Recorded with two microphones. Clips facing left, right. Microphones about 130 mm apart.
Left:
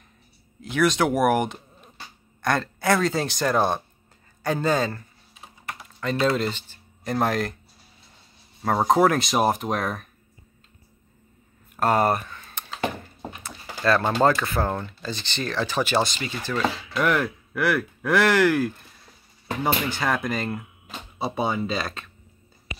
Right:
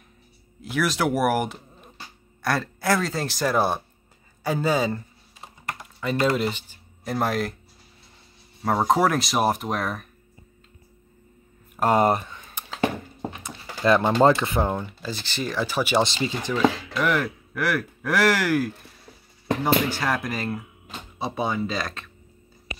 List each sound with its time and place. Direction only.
0.6 s speech: 5° right (ahead or behind)
8.6 s speech: centre (ahead or behind)
11.7 s speech: 15° right (ahead or behind)
13.4 s a sound: 15° right (ahead or behind)
14.2 s speech: 20° right (ahead or behind)
14.7 s speech: 10° right (ahead or behind)
16.0 s speech: 25° right (ahead or behind)
16.9 s speech: centre (ahead or behind)
19.9 s speech: centre (ahead or behind)